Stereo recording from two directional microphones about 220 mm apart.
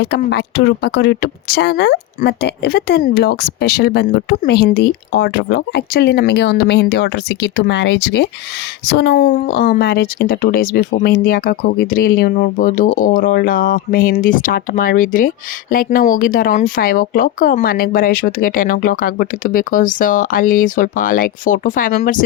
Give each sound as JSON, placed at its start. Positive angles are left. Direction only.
{"t": 0.0, "sound": "a woman's voice", "side_deg": 50}